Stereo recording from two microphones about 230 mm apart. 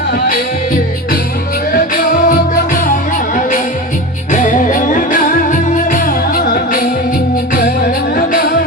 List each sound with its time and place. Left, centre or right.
1.7 s music: left
4.3 s music: left